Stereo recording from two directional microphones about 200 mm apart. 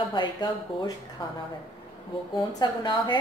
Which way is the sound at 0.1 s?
20° left (ahead or behind).